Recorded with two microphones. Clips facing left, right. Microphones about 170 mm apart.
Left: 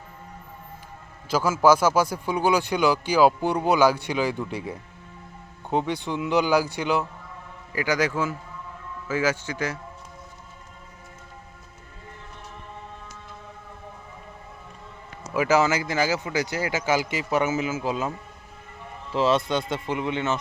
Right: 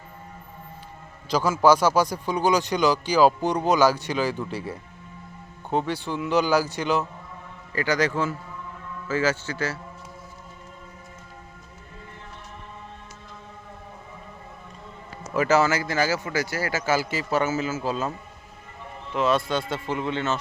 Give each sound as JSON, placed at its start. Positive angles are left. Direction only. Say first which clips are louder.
{"t": 1.3, "sound": "a man's voice", "louder": "even", "side_deg": 10}
{"t": 15.3, "sound": "a man's voice", "louder": "even", "side_deg": 10}
{"t": 19.1, "sound": "a man's voice", "louder": "left 1 dB", "side_deg": 25}